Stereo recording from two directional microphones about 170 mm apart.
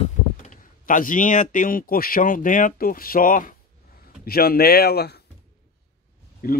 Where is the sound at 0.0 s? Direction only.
45° left (ahead or behind); by 5.2 s 70° left (ahead or behind).